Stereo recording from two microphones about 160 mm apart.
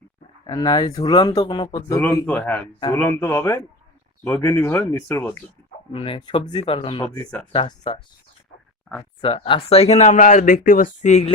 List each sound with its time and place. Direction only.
0.4 s speech: 25° left (ahead or behind)
2.0 s speech: 10° left (ahead or behind)
5.9 s speech: 35° left (ahead or behind)
9.2 s speech: 35° left (ahead or behind)